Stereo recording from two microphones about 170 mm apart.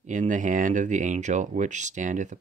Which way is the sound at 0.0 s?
50° right (ahead or behind).